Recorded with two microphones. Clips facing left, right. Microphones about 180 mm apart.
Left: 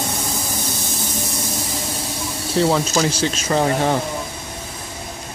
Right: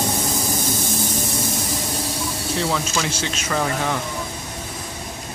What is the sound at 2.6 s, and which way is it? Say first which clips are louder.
Speech: left 7 dB; 40° left (ahead or behind).